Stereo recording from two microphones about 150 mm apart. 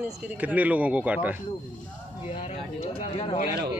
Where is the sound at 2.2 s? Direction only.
40° left (ahead or behind).